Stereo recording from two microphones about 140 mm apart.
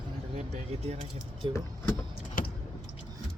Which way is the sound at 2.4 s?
85° left.